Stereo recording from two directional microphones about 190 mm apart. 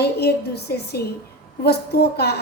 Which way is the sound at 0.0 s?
60° left (ahead or behind).